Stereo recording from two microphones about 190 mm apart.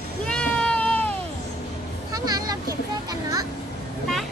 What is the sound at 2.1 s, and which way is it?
Vehicle, 20° right (ahead or behind).